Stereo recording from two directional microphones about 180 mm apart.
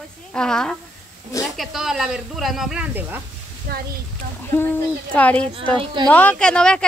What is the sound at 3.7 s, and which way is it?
Speech, 55° right (ahead or behind).